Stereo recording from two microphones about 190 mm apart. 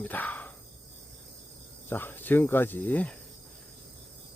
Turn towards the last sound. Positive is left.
turn(degrees=10)  # may be behind; listen again after turning